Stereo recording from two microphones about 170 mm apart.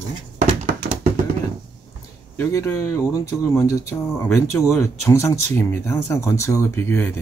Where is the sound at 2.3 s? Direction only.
15° left (ahead or behind).